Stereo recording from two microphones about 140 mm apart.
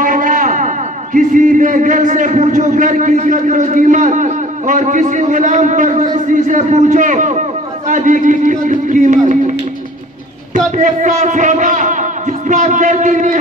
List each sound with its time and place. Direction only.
0.0 s a sound: 70° right (ahead or behind)
1.1 s a man's voice: 70° right (ahead or behind)
10.8 s speech: 60° right (ahead or behind)